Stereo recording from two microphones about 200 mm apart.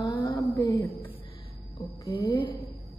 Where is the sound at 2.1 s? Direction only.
25° left (ahead or behind).